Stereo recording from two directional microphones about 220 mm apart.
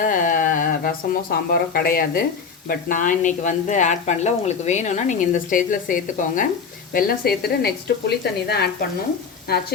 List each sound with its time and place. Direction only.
0.0 s speech: 35° left (ahead or behind)